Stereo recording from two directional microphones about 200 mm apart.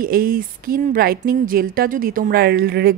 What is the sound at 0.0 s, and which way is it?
Speech, 45° right (ahead or behind).